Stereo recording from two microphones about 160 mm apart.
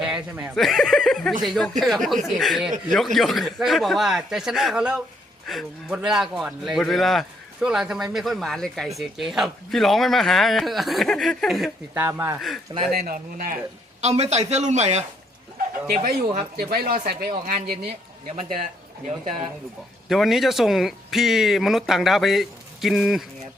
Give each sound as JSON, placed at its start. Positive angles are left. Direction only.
{"t": 0.0, "sound": "a man's voice", "side_deg": -5}
{"t": 11.9, "sound": "speech", "side_deg": -15}
{"t": 12.9, "sound": "speech", "side_deg": -70}
{"t": 14.0, "sound": "a man's voice", "side_deg": -45}
{"t": 15.9, "sound": "speech", "side_deg": -60}
{"t": 20.1, "sound": "a man's voice", "side_deg": 0}